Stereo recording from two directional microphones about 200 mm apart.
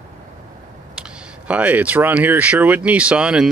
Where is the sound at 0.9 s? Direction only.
5° right (ahead or behind).